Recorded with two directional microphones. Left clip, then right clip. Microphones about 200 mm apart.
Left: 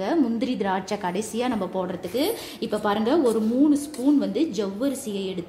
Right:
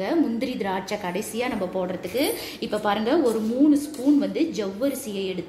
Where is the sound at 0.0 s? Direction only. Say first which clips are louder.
Even; 50° left (ahead or behind).